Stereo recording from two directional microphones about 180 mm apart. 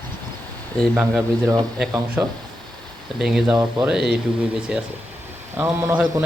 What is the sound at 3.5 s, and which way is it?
Speech, 20° right (ahead or behind).